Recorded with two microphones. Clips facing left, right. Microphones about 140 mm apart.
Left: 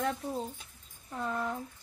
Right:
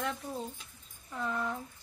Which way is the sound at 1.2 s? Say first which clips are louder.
Left 1 dB; 30° left (ahead or behind).